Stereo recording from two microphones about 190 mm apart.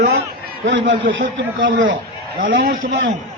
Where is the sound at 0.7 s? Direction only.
85° right.